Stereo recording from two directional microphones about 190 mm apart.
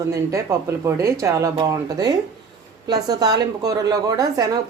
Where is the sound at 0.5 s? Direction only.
15° right (ahead or behind).